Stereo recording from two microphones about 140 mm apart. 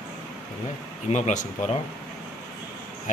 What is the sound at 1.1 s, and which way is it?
Speech, 55° left (ahead or behind).